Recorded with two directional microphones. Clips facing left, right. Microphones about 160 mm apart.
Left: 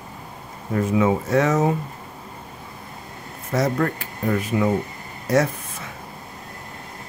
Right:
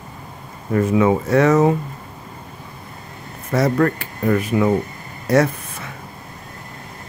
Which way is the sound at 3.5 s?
65° right (ahead or behind).